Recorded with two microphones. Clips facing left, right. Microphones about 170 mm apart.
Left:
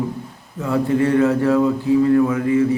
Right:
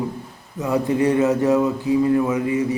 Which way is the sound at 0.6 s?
20° right (ahead or behind).